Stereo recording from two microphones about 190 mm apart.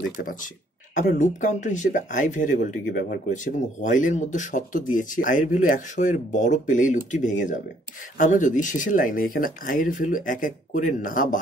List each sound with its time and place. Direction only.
0.9 s speech: 45° left (ahead or behind)